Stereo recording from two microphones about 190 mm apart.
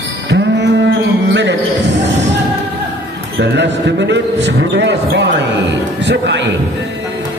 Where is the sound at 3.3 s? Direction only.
65° right (ahead or behind).